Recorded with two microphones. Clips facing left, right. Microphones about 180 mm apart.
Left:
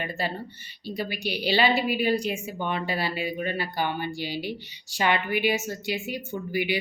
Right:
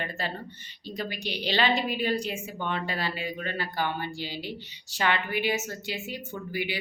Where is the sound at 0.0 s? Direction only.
10° left (ahead or behind).